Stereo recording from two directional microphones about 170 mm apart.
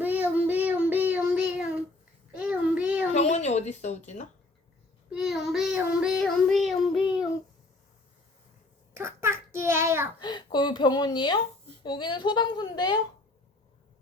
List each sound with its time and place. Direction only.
0.0 s child singing: 10° right (ahead or behind)
3.1 s a sound: 40° left (ahead or behind)
5.1 s child singing: centre (ahead or behind)
9.0 s a child's voice: 15° right (ahead or behind)
10.2 s speech: 25° left (ahead or behind)